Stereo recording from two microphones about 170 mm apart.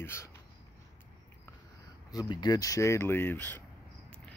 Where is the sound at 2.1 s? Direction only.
25° left (ahead or behind).